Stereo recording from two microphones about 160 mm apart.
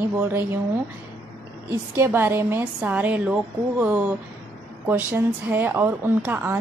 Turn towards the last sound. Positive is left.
turn(degrees=-10)  # may be behind; listen again after turning